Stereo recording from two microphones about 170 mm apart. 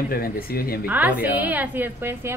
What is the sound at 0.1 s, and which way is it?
Speech, 60° left (ahead or behind).